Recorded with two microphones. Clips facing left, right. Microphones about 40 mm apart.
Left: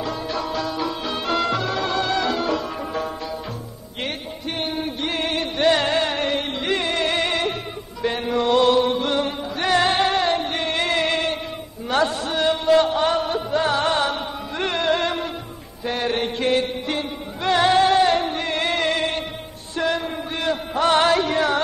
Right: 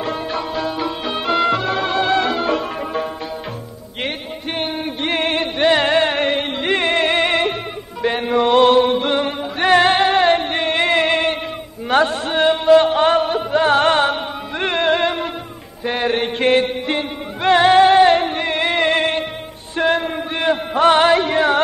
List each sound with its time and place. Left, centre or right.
0.0 s music: right
4.6 s music: right
5.6 s music: right
13.7 s music: right
14.1 s music: right
16.3 s music: right